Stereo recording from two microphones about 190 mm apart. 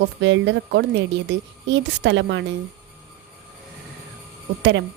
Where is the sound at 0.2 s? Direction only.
70° right (ahead or behind).